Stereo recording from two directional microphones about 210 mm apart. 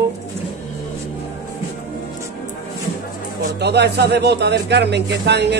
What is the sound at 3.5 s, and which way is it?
Speech, 50° right (ahead or behind).